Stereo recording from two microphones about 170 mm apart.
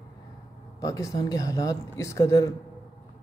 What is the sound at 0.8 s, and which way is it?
A man's voice, 20° left (ahead or behind).